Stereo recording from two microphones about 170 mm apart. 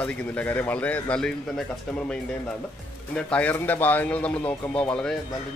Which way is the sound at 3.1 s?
10° left (ahead or behind).